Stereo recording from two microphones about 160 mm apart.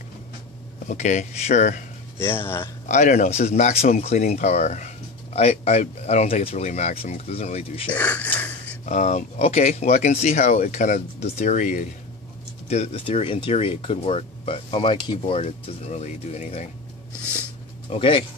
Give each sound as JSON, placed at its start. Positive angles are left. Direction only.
{"t": 0.8, "sound": "speech", "side_deg": 50}
{"t": 2.1, "sound": "speech", "side_deg": 15}
{"t": 2.9, "sound": "speech", "side_deg": 50}
{"t": 7.9, "sound": "wheeze", "side_deg": 10}
{"t": 8.8, "sound": "speech", "side_deg": 50}
{"t": 17.8, "sound": "speech", "side_deg": 35}